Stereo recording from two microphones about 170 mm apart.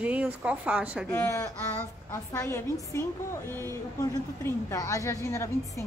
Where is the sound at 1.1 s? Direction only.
15° left (ahead or behind).